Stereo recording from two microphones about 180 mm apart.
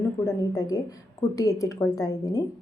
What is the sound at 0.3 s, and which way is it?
A woman's voice, 20° left (ahead or behind).